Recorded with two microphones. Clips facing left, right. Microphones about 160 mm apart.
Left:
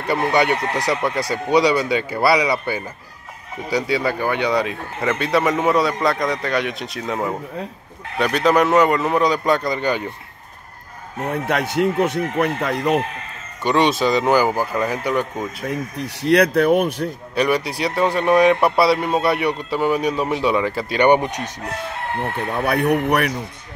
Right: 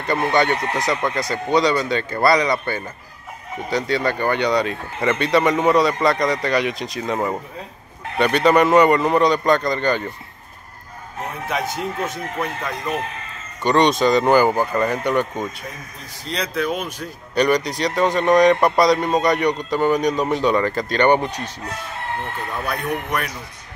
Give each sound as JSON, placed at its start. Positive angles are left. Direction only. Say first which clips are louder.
{"t": 0.1, "sound": "a man's voice", "louder": "left 1 dB", "side_deg": 10}
{"t": 11.4, "sound": "speech", "louder": "left 5 dB", "side_deg": 65}
{"t": 13.7, "sound": "speech", "louder": "right 1 dB", "side_deg": 5}
{"t": 15.7, "sound": "speech", "louder": "left 12 dB", "side_deg": 70}
{"t": 17.4, "sound": "a man's voice", "louder": "right 1 dB", "side_deg": 5}
{"t": 22.7, "sound": "speech", "louder": "left 8 dB", "side_deg": 70}